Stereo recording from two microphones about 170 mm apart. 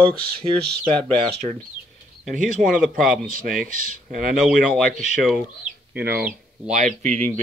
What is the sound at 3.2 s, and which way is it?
Speech, 55° right (ahead or behind).